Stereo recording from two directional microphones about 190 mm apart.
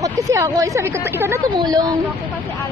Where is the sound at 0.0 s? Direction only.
15° right (ahead or behind).